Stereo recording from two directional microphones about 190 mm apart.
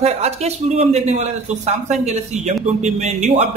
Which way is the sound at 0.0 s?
35° right (ahead or behind).